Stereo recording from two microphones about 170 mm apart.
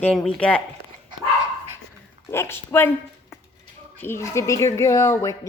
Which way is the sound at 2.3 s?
15° left (ahead or behind).